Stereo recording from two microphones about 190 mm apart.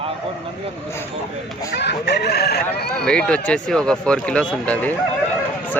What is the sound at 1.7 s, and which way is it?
Speech, 60° left (ahead or behind).